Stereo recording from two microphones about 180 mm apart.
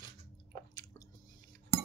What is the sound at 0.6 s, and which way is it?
Chewing, 20° left (ahead or behind).